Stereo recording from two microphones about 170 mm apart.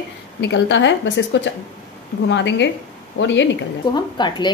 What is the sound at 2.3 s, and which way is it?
A woman's voice, 90° left.